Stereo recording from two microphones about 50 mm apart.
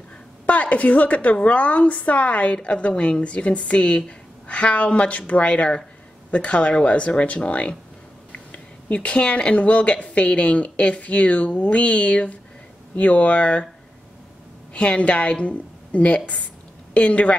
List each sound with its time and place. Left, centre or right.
0.5 s speech: left
14.7 s a woman's voice: left